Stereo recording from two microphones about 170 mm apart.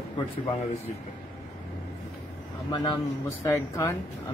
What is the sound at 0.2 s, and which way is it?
Speech, 30° left (ahead or behind).